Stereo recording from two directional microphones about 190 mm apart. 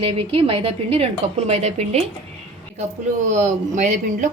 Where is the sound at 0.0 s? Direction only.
30° right (ahead or behind).